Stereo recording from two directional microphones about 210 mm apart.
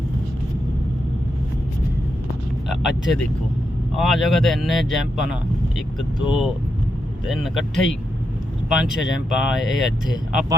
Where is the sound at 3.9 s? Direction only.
Centre (ahead or behind).